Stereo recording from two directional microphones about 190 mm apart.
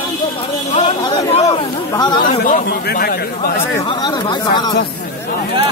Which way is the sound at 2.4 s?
50° left (ahead or behind).